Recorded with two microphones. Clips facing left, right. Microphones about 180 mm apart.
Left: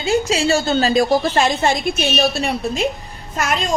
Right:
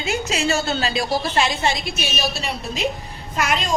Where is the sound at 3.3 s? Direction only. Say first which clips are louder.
Left 2 dB; 45° left (ahead or behind).